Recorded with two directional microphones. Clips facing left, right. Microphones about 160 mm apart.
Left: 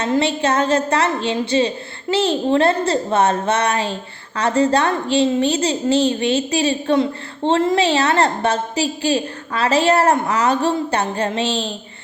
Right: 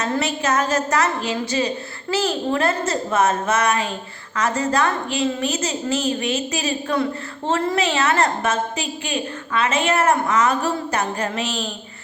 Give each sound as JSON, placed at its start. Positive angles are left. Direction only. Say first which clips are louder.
{"t": 0.2, "sound": "a woman's voice", "louder": "left 3 dB", "side_deg": 30}